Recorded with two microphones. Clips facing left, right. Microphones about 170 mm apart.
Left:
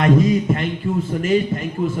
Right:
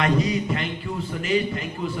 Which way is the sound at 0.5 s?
50° left (ahead or behind).